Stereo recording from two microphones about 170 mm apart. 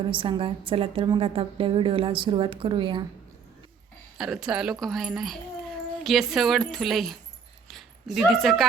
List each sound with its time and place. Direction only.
0.1 s a woman's voice: 30° right (ahead or behind)
4.2 s speech: 5° right (ahead or behind)